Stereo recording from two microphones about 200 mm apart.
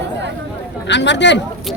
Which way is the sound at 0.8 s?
60° left (ahead or behind).